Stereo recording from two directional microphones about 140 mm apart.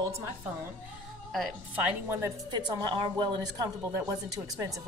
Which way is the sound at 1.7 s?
10° right (ahead or behind).